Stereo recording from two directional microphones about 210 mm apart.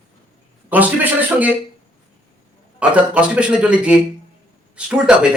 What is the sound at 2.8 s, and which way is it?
Speech, 5° right (ahead or behind).